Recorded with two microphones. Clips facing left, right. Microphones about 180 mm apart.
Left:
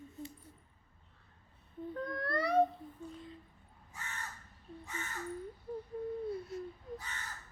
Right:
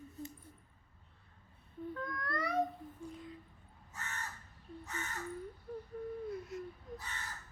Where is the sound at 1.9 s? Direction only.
30° left (ahead or behind).